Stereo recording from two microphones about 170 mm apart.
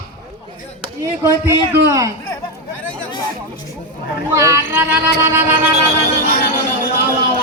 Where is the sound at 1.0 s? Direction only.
20° right (ahead or behind).